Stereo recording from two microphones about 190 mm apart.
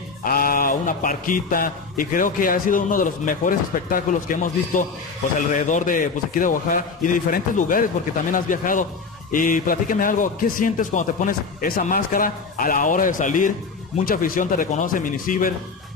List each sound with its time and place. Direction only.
0.2 s speech: 50° left (ahead or behind)